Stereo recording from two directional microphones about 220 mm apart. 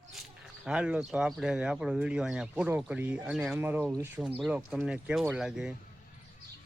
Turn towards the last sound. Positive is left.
turn(degrees=-5)  # may be behind; listen again after turning